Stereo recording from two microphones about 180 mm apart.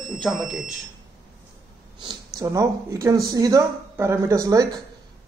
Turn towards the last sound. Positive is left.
turn(degrees=-20)  # may be behind; listen again after turning